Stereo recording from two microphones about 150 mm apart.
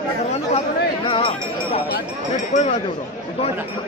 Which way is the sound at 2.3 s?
50° left (ahead or behind).